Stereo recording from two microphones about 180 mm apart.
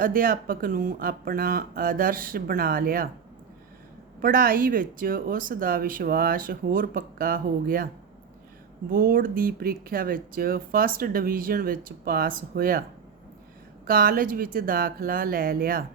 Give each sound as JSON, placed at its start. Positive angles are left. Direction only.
{"t": 0.0, "sound": "speech", "side_deg": -50}
{"t": 4.2, "sound": "speech", "side_deg": -55}
{"t": 8.9, "sound": "speech", "side_deg": -50}
{"t": 13.8, "sound": "speech", "side_deg": -55}